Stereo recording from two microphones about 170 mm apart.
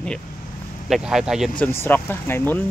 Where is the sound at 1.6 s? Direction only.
10° left (ahead or behind).